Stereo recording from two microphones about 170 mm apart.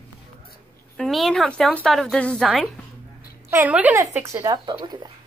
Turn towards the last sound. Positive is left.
turn(degrees=-25)  # may be behind; listen again after turning